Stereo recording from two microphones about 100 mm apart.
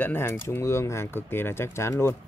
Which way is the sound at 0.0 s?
25° left (ahead or behind).